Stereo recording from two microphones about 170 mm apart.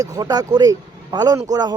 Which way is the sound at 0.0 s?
20° right (ahead or behind).